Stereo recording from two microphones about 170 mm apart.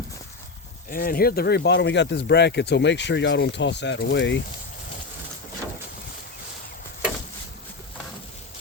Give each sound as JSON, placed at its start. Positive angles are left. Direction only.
{"t": 0.9, "sound": "speech", "side_deg": 55}